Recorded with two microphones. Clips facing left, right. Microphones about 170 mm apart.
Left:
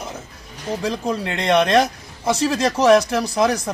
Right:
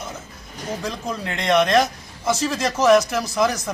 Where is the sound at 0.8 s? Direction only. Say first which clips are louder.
Left 7 dB; 35° left (ahead or behind).